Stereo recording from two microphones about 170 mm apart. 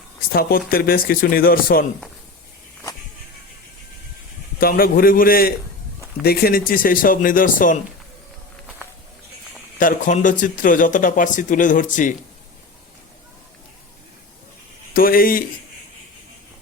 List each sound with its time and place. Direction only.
0.7 s speech: 60° left (ahead or behind)
4.6 s speech: 60° left (ahead or behind)
9.7 s speech: 50° left (ahead or behind)
14.9 s speech: 60° left (ahead or behind)